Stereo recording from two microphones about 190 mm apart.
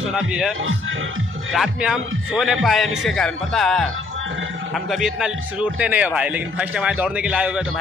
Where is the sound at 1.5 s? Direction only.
5° right (ahead or behind).